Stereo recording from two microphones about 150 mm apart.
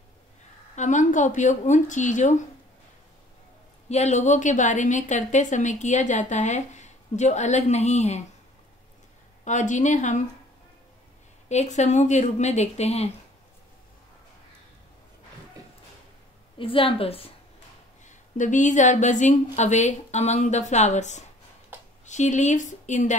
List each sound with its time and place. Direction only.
0.7 s speech: 55° left (ahead or behind)
3.9 s a woman's voice: 50° left (ahead or behind)
9.4 s speech: 55° left (ahead or behind)
11.4 s a woman's voice: 50° left (ahead or behind)
16.5 s a woman's voice: 35° left (ahead or behind)
18.0 s a woman's voice: 55° left (ahead or behind)